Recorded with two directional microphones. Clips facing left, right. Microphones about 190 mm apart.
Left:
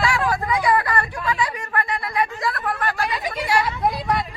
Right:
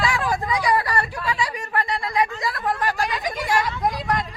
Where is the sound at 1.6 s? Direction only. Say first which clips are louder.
Even; 15° right (ahead or behind).